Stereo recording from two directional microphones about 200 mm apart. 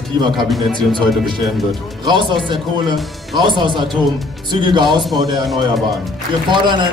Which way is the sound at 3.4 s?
25° right (ahead or behind).